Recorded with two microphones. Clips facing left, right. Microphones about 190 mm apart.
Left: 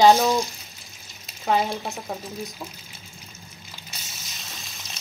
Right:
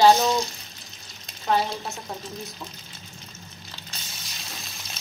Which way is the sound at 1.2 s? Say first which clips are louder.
Left 1 dB; 10° left (ahead or behind).